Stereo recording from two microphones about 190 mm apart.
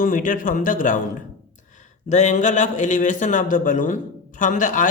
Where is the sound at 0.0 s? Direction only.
45° left (ahead or behind).